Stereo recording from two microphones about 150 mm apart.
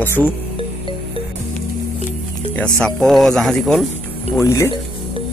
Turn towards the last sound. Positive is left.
turn(degrees=20)  # may be behind; listen again after turning